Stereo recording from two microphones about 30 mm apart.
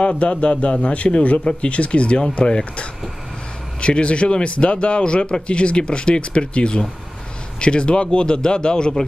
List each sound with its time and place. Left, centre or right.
0.2 s speech: left